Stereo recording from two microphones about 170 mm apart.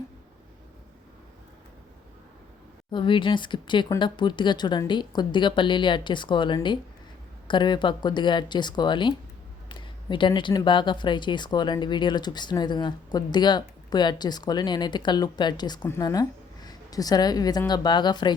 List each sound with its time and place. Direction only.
2.9 s speech: 30° left (ahead or behind)